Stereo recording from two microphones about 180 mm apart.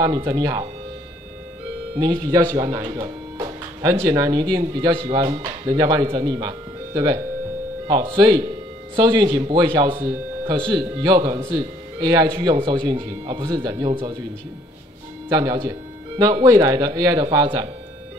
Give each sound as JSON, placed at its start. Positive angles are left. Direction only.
{"t": 0.0, "sound": "speech", "side_deg": -25}
{"t": 2.0, "sound": "speech", "side_deg": -20}
{"t": 8.2, "sound": "speech", "side_deg": -25}
{"t": 15.2, "sound": "speech", "side_deg": -25}